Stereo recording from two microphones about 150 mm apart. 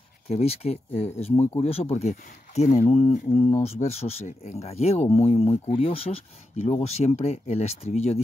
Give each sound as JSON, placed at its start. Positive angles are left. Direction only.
{"t": 0.3, "sound": "speech", "side_deg": 45}